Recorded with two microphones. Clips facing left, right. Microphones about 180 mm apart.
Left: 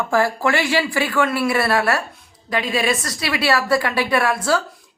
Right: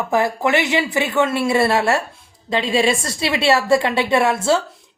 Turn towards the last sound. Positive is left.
turn(degrees=-25)  # may be behind; listen again after turning